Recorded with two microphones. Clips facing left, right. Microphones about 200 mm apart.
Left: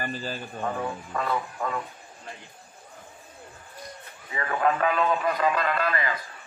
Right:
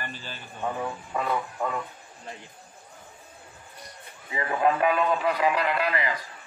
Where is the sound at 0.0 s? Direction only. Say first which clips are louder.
Left 7 dB; 40° left (ahead or behind).